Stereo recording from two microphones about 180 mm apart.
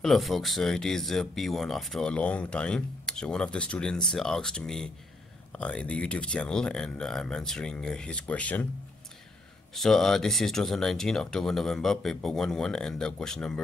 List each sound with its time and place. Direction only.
0.0 s speech: centre (ahead or behind)
9.8 s speech: centre (ahead or behind)